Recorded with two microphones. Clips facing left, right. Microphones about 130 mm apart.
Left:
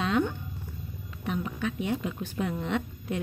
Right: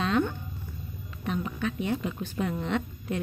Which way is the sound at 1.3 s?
10° left (ahead or behind).